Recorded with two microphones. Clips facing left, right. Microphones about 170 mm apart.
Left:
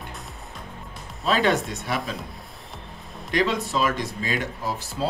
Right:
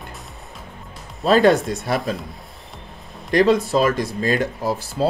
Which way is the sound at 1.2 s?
40° right (ahead or behind).